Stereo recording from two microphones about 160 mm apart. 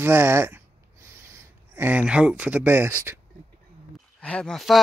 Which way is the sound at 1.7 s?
10° right (ahead or behind).